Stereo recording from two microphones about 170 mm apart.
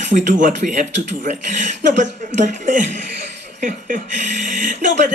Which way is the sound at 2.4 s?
50° right (ahead or behind).